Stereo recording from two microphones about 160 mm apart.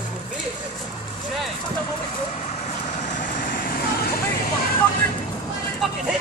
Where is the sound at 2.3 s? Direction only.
45° left (ahead or behind); by 4.1 s 70° left (ahead or behind).